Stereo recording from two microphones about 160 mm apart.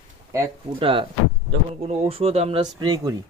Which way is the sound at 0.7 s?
35° right (ahead or behind).